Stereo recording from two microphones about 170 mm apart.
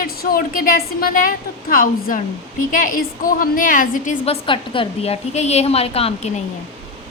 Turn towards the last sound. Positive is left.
turn(degrees=35)  # may be behind; listen again after turning